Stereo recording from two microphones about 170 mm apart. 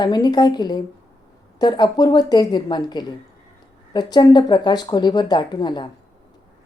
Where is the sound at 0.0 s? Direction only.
25° left (ahead or behind).